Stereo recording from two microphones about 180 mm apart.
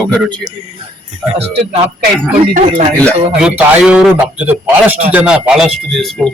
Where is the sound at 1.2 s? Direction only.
Centre (ahead or behind).